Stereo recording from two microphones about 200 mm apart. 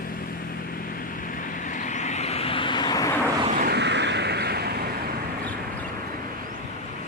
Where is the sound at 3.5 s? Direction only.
50° right (ahead or behind).